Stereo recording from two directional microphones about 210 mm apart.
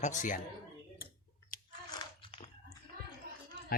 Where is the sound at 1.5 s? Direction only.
40° left (ahead or behind).